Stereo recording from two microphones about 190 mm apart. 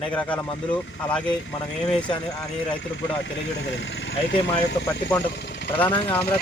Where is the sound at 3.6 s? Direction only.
70° left (ahead or behind).